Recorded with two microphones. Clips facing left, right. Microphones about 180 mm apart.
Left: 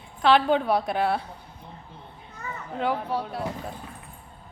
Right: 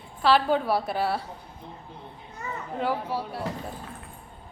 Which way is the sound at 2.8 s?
5° right (ahead or behind).